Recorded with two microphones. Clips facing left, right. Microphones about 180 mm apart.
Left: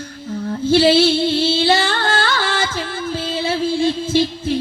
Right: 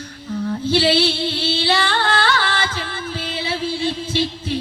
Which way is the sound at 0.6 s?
45° left (ahead or behind).